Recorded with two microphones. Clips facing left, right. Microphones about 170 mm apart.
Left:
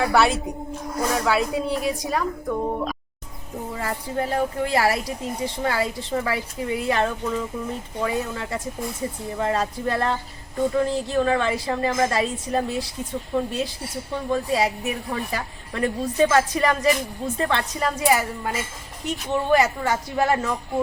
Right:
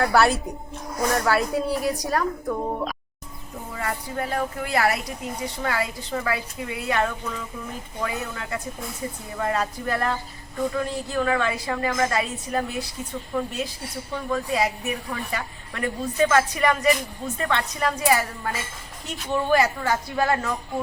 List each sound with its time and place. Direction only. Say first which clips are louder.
0.0 s a woman's voice: even; centre (ahead or behind)
3.8 s a woman's voice: left 2 dB; 30° left (ahead or behind)